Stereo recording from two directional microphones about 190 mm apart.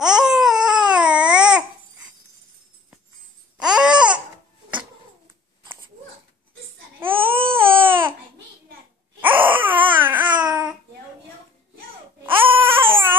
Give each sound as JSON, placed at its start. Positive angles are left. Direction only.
{"t": 0.0, "sound": "a sound", "side_deg": -5}
{"t": 3.5, "sound": "babbling", "side_deg": -5}
{"t": 7.2, "sound": "baby cry", "side_deg": -30}
{"t": 7.5, "sound": "baby cry", "side_deg": -10}
{"t": 9.2, "sound": "babbling", "side_deg": -10}
{"t": 12.3, "sound": "baby cry", "side_deg": -10}